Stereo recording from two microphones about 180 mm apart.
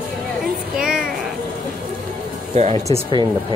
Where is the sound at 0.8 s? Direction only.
5° right (ahead or behind).